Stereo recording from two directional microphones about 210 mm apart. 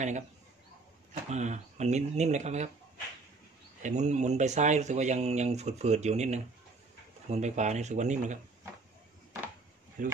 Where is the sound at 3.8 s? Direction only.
35° right (ahead or behind).